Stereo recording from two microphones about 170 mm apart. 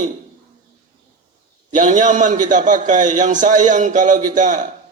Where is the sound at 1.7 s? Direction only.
45° right (ahead or behind).